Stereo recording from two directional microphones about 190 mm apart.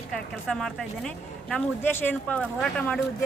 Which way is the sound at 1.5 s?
10° left (ahead or behind).